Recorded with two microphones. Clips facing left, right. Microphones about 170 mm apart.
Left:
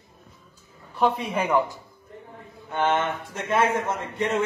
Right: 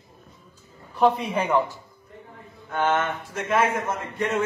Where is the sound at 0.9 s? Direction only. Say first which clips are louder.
Right 2 dB; centre (ahead or behind).